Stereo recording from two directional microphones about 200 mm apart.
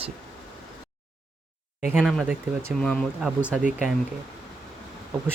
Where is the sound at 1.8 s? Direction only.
5° right (ahead or behind).